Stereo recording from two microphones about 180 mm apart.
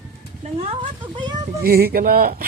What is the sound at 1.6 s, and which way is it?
Speech, 60° right (ahead or behind).